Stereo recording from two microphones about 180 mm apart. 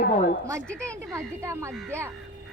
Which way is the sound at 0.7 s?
5° left (ahead or behind).